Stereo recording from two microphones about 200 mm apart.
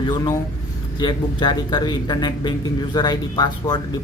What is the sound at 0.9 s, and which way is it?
A man's voice, 20° left (ahead or behind).